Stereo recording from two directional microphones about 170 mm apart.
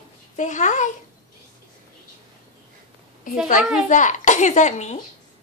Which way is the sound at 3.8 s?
45° left (ahead or behind).